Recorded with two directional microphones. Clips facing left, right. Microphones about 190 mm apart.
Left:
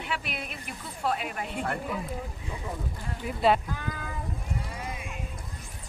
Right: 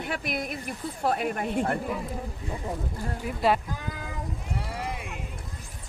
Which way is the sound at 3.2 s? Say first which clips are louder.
Left 1 dB; centre (ahead or behind).